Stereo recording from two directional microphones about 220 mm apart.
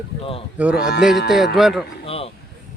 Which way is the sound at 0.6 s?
5° right (ahead or behind).